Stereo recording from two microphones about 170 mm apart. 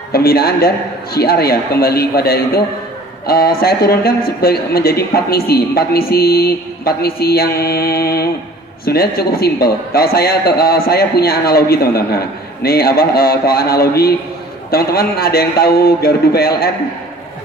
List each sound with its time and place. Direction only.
0.1 s a man's voice: 65° left (ahead or behind)